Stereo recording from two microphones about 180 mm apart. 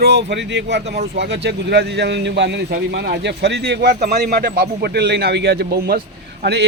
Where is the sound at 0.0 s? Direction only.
70° right (ahead or behind).